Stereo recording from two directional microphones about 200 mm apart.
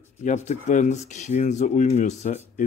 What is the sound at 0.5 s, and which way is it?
Speech, 35° left (ahead or behind).